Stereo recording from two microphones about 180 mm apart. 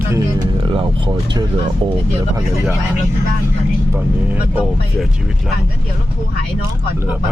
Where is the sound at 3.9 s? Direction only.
10° right (ahead or behind).